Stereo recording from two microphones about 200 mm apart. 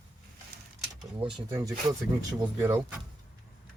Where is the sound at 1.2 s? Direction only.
25° right (ahead or behind).